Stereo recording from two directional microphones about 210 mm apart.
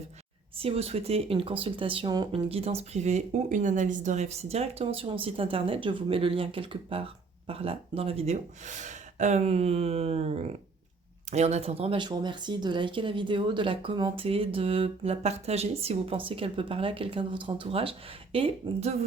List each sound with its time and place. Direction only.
0.5 s speech: 30° right (ahead or behind)